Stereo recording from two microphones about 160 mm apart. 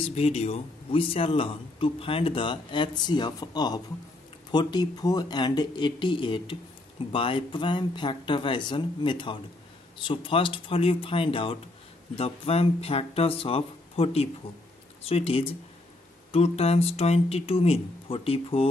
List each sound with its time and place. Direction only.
0.0 s a man's voice: 40° left (ahead or behind)